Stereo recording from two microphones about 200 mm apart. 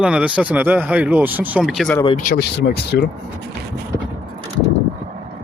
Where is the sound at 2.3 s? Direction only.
50° left (ahead or behind).